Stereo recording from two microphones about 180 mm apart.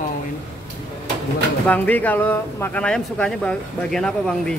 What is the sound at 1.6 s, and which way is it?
Speech, 10° left (ahead or behind).